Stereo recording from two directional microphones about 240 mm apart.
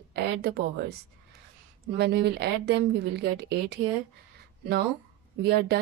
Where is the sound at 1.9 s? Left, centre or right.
Right.